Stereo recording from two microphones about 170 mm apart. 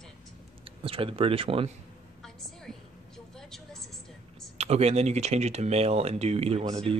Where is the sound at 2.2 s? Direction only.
Centre (ahead or behind).